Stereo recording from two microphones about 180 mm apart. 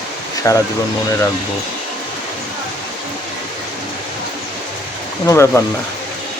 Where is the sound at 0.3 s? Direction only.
20° left (ahead or behind).